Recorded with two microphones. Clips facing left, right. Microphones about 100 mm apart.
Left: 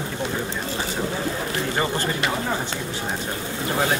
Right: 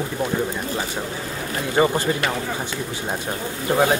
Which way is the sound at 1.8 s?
15° right (ahead or behind).